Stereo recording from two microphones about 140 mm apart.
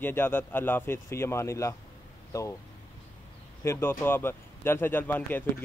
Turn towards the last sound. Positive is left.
turn(degrees=15)  # may be behind; listen again after turning